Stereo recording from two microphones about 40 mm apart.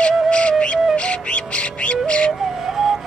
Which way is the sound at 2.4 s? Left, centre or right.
Centre.